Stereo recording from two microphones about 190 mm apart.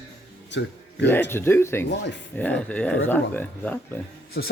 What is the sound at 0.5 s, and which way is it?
Speech, 70° left (ahead or behind).